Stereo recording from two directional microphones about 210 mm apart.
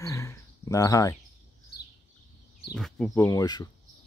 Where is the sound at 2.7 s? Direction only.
Centre (ahead or behind).